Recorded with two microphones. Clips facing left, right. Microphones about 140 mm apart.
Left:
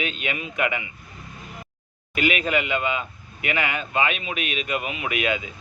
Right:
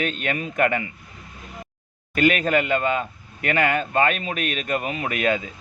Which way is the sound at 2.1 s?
45° right (ahead or behind).